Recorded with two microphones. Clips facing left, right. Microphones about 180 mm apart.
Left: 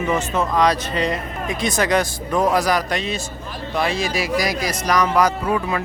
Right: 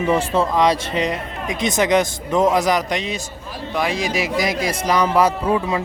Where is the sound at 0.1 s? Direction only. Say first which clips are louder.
Right 3 dB; 30° right (ahead or behind).